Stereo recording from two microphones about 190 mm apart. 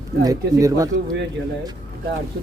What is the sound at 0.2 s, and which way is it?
Speech, 20° right (ahead or behind).